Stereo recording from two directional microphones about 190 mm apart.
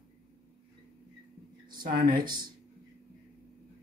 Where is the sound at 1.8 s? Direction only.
50° right (ahead or behind).